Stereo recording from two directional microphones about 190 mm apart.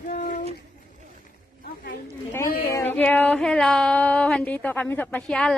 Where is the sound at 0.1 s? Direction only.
40° left (ahead or behind).